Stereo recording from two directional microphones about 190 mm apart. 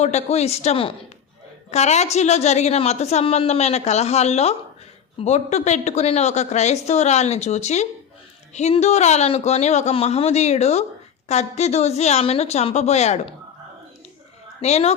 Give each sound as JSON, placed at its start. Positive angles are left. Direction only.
{"t": 0.0, "sound": "a woman's voice", "side_deg": 35}
{"t": 14.6, "sound": "a woman's voice", "side_deg": 35}